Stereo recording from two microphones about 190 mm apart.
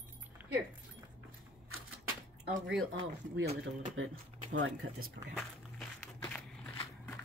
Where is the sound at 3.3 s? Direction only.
60° right (ahead or behind).